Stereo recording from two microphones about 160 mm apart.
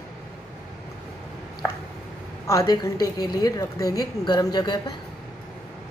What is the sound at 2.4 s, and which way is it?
A woman's voice, 25° left (ahead or behind).